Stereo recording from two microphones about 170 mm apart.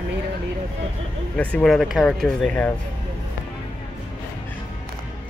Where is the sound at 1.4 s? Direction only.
10° left (ahead or behind).